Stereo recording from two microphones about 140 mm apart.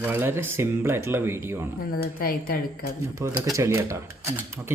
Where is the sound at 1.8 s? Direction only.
90° left.